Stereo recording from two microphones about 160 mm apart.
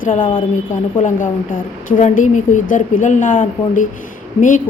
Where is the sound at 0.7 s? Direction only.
55° left (ahead or behind).